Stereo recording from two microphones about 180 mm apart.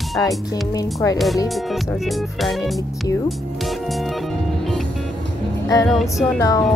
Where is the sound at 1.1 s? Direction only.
Centre (ahead or behind).